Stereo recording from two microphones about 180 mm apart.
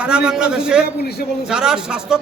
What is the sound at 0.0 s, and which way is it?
A man's voice, 5° right (ahead or behind).